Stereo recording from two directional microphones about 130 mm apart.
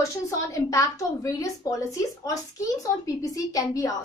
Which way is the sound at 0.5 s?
25° left (ahead or behind).